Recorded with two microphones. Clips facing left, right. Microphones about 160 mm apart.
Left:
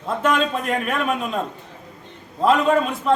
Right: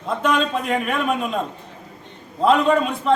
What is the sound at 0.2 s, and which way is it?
A man's voice, centre (ahead or behind).